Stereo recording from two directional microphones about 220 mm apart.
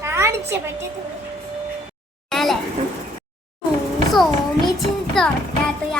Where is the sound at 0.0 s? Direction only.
10° right (ahead or behind).